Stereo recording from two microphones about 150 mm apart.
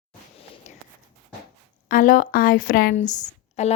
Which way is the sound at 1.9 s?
60° left (ahead or behind).